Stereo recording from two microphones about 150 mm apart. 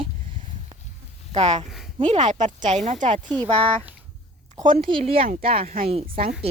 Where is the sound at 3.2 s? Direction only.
10° left (ahead or behind).